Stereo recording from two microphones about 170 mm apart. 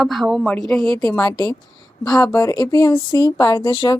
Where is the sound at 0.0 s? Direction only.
Centre (ahead or behind).